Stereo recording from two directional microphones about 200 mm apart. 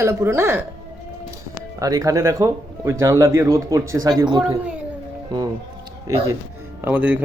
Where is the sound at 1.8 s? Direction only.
15° right (ahead or behind).